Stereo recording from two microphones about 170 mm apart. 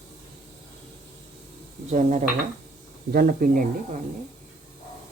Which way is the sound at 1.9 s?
50° right (ahead or behind).